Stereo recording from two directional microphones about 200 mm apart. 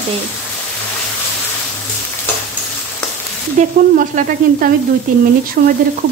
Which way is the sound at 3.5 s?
40° right (ahead or behind).